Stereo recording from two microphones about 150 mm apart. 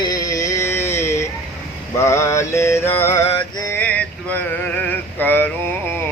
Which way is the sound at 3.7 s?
10° left (ahead or behind).